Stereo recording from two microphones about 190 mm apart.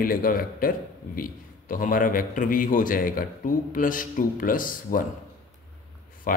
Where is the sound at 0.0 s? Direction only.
50° left (ahead or behind).